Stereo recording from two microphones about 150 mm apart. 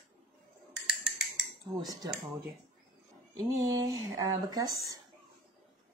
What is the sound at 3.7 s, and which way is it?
A woman's voice, 25° right (ahead or behind).